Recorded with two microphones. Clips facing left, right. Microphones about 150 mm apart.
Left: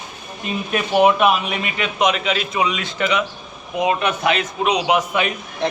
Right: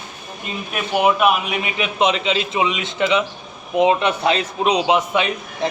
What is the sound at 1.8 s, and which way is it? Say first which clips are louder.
A man's voice: even; 25° right (ahead or behind).